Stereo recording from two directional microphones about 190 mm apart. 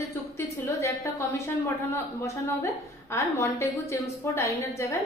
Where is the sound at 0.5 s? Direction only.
15° left (ahead or behind).